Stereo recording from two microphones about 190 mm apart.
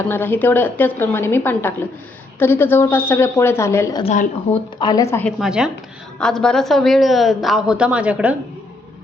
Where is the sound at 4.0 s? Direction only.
35° left (ahead or behind).